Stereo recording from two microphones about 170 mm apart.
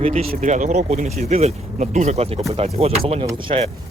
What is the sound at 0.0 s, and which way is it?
Speech, 35° right (ahead or behind).